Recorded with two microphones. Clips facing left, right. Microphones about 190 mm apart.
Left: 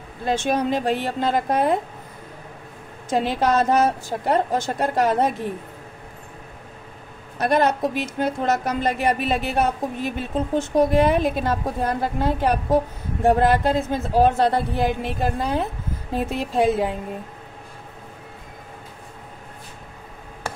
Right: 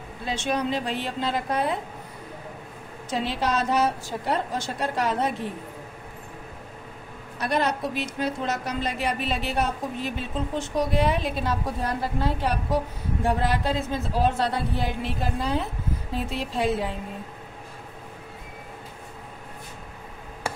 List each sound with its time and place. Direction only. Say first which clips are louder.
0.2 s a woman's voice: left 5 dB; 50° left (ahead or behind)
3.1 s a woman's voice: left 6 dB; 50° left (ahead or behind)
7.3 s a woman's voice: left 6 dB; 50° left (ahead or behind)